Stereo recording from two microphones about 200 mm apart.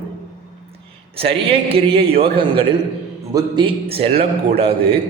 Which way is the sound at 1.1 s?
30° right (ahead or behind).